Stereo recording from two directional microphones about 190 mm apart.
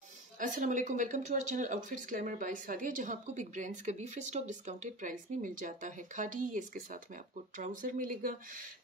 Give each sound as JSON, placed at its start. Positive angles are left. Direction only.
{"t": 0.4, "sound": "speech", "side_deg": -40}